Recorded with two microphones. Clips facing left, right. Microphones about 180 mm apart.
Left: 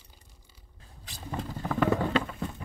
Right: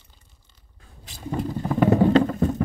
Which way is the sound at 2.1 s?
45° right (ahead or behind).